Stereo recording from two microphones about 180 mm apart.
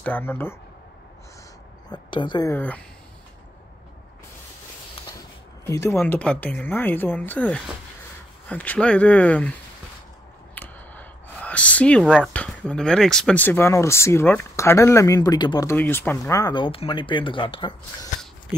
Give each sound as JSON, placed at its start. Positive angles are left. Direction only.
{"t": 0.0, "sound": "speech", "side_deg": 10}
{"t": 1.9, "sound": "speech", "side_deg": 25}
{"t": 2.5, "sound": "speech", "side_deg": 10}
{"t": 5.7, "sound": "speech", "side_deg": 15}
{"t": 5.9, "sound": "speech", "side_deg": 5}
{"t": 10.5, "sound": "a sound", "side_deg": 10}
{"t": 12.2, "sound": "speech", "side_deg": 5}
{"t": 15.7, "sound": "speech", "side_deg": 10}